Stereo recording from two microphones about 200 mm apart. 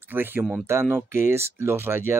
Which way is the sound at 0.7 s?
15° right (ahead or behind).